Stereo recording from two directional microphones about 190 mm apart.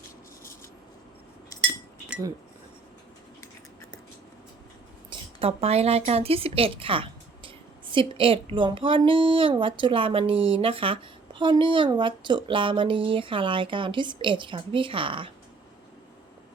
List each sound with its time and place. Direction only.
5.4 s speech: 30° right (ahead or behind)